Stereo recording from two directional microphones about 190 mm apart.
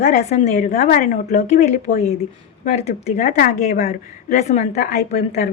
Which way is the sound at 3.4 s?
50° left (ahead or behind).